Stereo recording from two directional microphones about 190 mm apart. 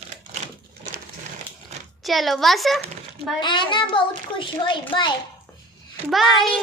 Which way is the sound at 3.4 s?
25° left (ahead or behind).